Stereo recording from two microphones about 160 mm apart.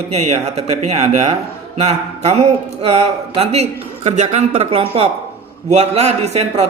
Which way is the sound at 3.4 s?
40° right (ahead or behind).